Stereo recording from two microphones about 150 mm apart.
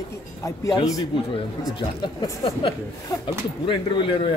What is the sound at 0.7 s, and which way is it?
A man's voice, 35° left (ahead or behind).